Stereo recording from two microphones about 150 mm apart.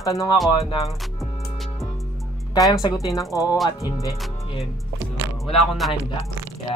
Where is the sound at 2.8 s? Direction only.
25° left (ahead or behind).